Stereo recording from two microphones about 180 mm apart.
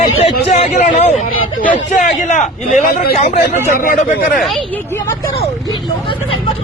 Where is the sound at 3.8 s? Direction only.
55° left (ahead or behind).